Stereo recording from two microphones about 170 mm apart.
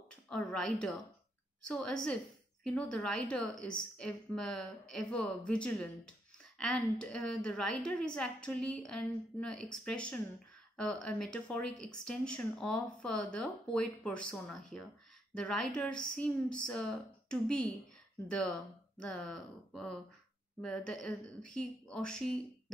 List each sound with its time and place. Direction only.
0.1 s a woman's voice: 5° left (ahead or behind)
18.9 s speech: 5° left (ahead or behind)